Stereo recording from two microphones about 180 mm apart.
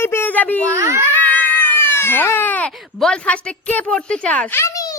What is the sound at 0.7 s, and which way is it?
Speech, 15° right (ahead or behind).